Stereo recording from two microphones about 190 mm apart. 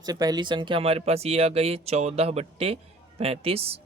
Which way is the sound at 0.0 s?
20° right (ahead or behind).